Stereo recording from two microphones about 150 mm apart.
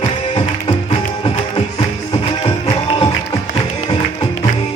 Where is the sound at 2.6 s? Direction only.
30° left (ahead or behind).